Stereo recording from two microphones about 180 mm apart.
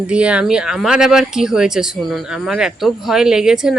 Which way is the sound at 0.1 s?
5° right (ahead or behind).